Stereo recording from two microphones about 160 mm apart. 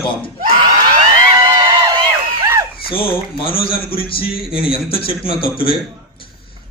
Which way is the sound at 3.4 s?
65° left (ahead or behind).